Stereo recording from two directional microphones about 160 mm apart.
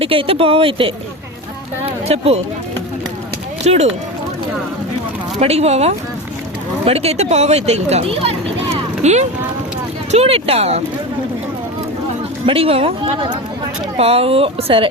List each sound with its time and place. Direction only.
0.0 s speech: 35° right (ahead or behind)
2.0 s speech: 40° right (ahead or behind)
3.6 s speech: 40° right (ahead or behind)
5.4 s speech: 40° right (ahead or behind)
8.7 s a sound: 45° right (ahead or behind)
10.1 s speech: 40° right (ahead or behind)
12.5 s speech: 35° right (ahead or behind)